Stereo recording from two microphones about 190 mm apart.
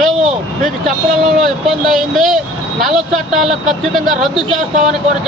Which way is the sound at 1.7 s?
Centre (ahead or behind).